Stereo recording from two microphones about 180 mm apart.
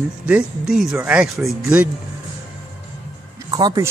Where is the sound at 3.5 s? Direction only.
20° right (ahead or behind).